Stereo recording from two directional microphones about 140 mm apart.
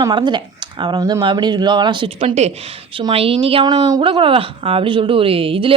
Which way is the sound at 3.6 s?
30° right (ahead or behind).